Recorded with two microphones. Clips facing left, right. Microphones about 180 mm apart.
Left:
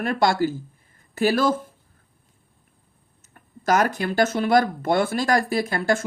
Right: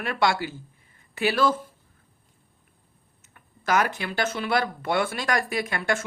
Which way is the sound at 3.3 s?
45° left (ahead or behind).